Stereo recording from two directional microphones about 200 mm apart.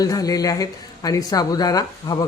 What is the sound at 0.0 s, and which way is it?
A woman's voice, 20° left (ahead or behind).